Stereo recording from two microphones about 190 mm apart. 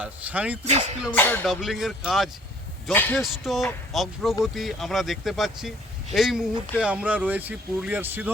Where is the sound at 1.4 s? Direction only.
Centre (ahead or behind).